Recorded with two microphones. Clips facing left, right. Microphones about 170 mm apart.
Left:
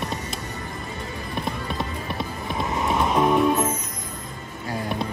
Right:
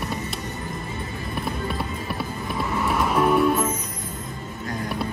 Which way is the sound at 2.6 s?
20° left (ahead or behind).